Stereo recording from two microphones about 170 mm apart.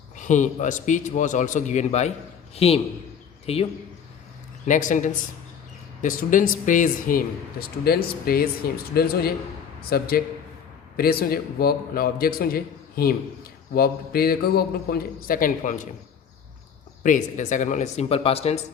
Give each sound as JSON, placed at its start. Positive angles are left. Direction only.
{"t": 0.2, "sound": "a man's voice", "side_deg": 45}
{"t": 4.6, "sound": "a man's voice", "side_deg": 50}
{"t": 17.0, "sound": "a man's voice", "side_deg": 50}